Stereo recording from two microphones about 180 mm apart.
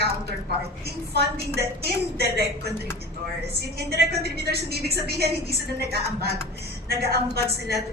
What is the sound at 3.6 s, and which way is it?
A woman's voice, 65° right (ahead or behind).